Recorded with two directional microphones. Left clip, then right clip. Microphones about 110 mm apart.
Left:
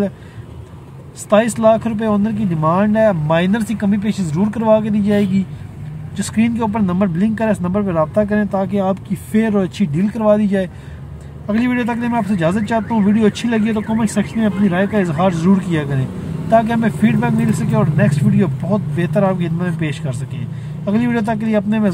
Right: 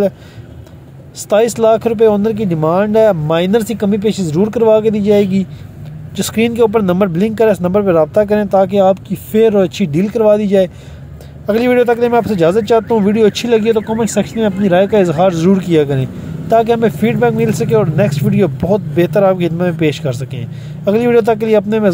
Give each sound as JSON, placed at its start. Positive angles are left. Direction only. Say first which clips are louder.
{"t": 1.3, "sound": "speech", "louder": "right 2 dB", "side_deg": -35}
{"t": 6.1, "sound": "speech", "louder": "right 7 dB", "side_deg": -45}
{"t": 9.1, "sound": "speech", "louder": "right 8 dB", "side_deg": -25}
{"t": 11.4, "sound": "speech", "louder": "right 8 dB", "side_deg": -45}